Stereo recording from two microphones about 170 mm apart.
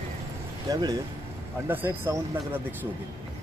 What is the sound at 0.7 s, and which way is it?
Speech, 25° right (ahead or behind).